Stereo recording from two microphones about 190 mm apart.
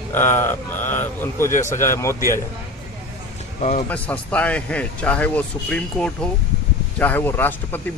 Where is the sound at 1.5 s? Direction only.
40° left (ahead or behind).